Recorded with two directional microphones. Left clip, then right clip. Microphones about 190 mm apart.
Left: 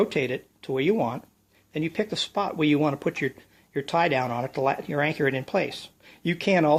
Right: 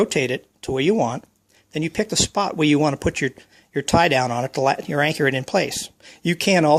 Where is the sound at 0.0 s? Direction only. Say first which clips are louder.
Right 4 dB; 40° right (ahead or behind).